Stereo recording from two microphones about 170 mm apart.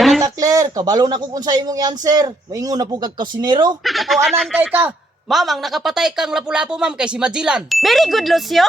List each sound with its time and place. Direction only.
0.2 s speech: 20° right (ahead or behind)
3.8 s a man's voice: centre (ahead or behind)